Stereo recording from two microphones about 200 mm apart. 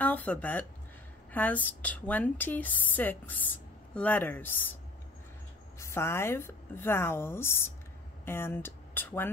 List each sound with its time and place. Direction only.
0.0 s a woman's voice: 5° left (ahead or behind)
5.8 s a woman's voice: 15° left (ahead or behind)